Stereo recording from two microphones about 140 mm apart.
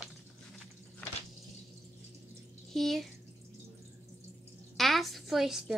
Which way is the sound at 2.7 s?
Centre (ahead or behind).